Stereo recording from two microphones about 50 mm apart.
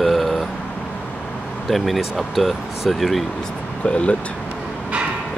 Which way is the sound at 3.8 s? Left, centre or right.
Left.